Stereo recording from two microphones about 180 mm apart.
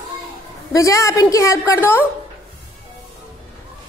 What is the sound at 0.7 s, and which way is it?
A child's voice, 15° left (ahead or behind).